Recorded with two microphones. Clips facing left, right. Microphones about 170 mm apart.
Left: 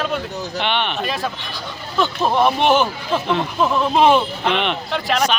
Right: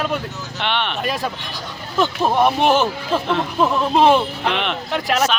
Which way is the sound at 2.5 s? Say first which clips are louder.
Even; 5° right (ahead or behind).